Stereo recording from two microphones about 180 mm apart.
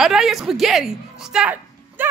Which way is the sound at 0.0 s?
5° right (ahead or behind).